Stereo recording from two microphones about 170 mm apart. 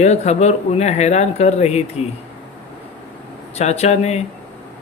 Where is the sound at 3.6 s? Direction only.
40° left (ahead or behind).